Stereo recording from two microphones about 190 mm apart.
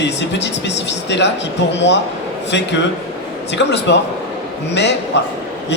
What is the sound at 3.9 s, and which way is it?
Speech, 65° left (ahead or behind).